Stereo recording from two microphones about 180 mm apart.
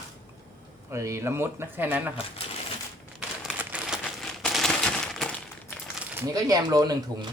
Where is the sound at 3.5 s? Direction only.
5° right (ahead or behind).